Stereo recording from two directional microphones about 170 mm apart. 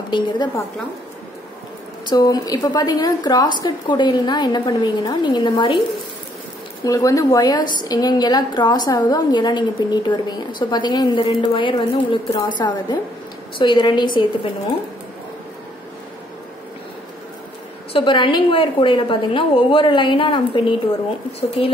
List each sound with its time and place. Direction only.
2.0 s a woman's voice: 25° left (ahead or behind)
6.8 s a woman's voice: 20° left (ahead or behind)
17.9 s a woman's voice: 30° left (ahead or behind)